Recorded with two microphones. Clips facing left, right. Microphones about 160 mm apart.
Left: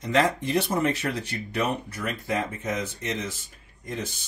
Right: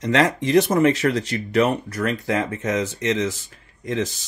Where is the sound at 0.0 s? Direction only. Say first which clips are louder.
Right 4 dB; 85° right.